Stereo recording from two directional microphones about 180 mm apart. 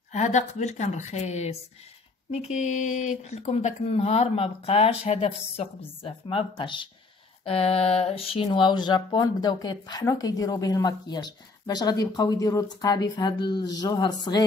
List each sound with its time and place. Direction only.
0.1 s speech: 40° left (ahead or behind); by 14.1 s 20° left (ahead or behind)